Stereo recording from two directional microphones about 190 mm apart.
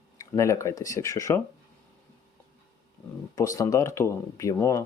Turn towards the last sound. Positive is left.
turn(degrees=15)  # may be behind; listen again after turning